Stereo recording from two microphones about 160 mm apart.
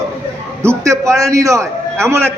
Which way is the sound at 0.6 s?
15° right (ahead or behind).